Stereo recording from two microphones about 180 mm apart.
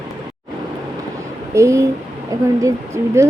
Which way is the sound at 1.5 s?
15° right (ahead or behind).